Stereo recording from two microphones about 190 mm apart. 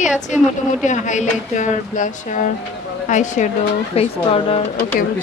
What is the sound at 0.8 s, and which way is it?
Speech, 40° left (ahead or behind).